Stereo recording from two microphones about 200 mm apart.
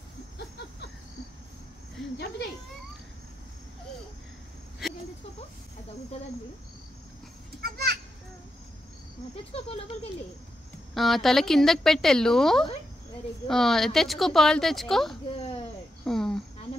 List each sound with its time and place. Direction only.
4.8 s a sound: centre (ahead or behind)
7.6 s children playing: 50° right (ahead or behind)
9.3 s speech: 30° left (ahead or behind)
11.0 s speech: centre (ahead or behind)
16.0 s cricket: 5° left (ahead or behind)